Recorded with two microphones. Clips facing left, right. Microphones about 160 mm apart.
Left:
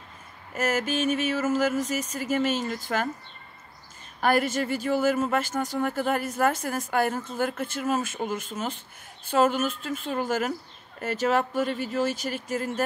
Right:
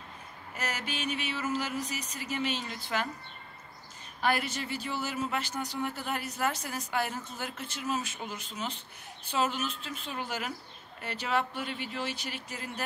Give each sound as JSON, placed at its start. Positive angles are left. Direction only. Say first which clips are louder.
{"t": 0.6, "sound": "speech", "louder": "left 11 dB", "side_deg": 45}
{"t": 4.2, "sound": "speech", "louder": "left 7 dB", "side_deg": 45}